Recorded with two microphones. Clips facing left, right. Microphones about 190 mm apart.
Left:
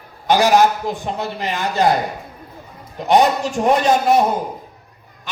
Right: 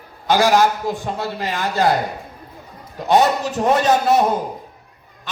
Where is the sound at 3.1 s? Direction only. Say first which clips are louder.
Left 1 dB; 15° left (ahead or behind).